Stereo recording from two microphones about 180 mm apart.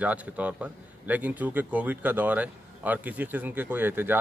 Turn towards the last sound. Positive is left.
turn(degrees=-10)  # may be behind; listen again after turning